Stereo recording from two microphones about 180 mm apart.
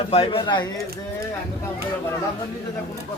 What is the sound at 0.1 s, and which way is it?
Speech, 30° left (ahead or behind).